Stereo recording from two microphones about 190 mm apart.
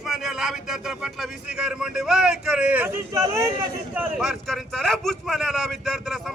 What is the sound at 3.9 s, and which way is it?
Speech, centre (ahead or behind).